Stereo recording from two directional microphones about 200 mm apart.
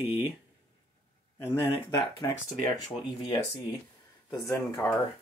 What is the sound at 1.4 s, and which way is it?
Speech, 10° left (ahead or behind).